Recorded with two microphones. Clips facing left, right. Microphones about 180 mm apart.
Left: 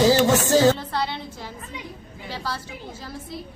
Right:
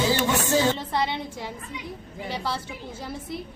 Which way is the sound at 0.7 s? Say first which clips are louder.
Right 1 dB; 20° right (ahead or behind).